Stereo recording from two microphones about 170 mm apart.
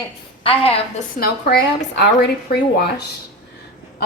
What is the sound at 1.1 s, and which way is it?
Speech, 60° left (ahead or behind).